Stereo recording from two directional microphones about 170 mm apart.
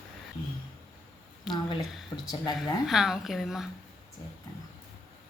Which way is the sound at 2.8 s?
Centre (ahead or behind).